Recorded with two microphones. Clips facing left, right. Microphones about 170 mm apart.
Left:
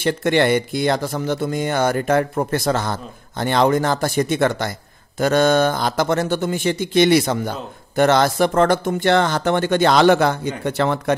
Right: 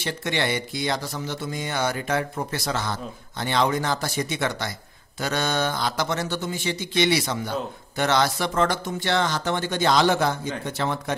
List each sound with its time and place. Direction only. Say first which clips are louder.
0.0 s speech: left 9 dB; 55° left (ahead or behind)